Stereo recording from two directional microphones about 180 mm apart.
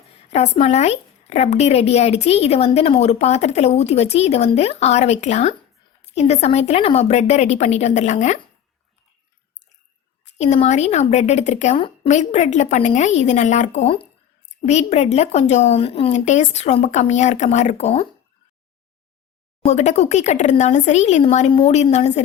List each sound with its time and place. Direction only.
0.3 s speech: 35° left (ahead or behind)
10.3 s speech: 40° left (ahead or behind)
19.6 s speech: 40° left (ahead or behind)